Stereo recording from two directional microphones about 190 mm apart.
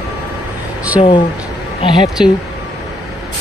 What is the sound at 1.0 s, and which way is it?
Speech, 30° left (ahead or behind).